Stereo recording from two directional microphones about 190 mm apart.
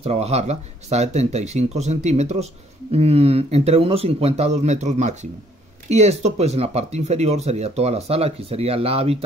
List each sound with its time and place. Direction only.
0.0 s speech: 35° right (ahead or behind)